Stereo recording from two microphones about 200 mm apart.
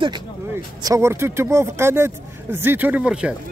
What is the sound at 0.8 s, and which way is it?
Speech, 15° right (ahead or behind).